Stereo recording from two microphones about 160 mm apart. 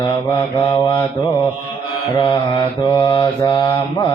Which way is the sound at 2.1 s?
30° left (ahead or behind).